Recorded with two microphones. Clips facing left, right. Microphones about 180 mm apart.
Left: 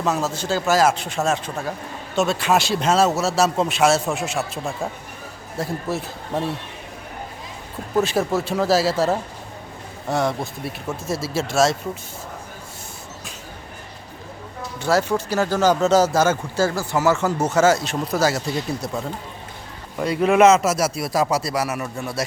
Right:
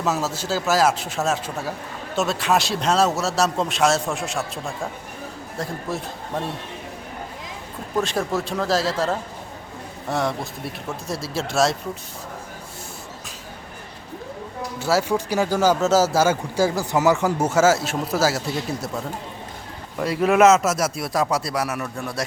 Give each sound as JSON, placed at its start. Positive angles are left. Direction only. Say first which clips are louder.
{"t": 0.0, "sound": "a man's voice", "louder": "left 1 dB", "side_deg": -5}
{"t": 7.9, "sound": "a man's voice", "louder": "left 3 dB", "side_deg": 5}
{"t": 14.8, "sound": "speech", "louder": "left 1 dB", "side_deg": -5}
{"t": 20.0, "sound": "a man's voice", "louder": "left 1 dB", "side_deg": 0}